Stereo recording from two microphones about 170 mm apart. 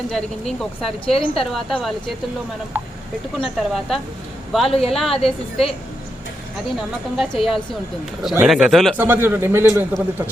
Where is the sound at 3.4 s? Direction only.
Centre (ahead or behind).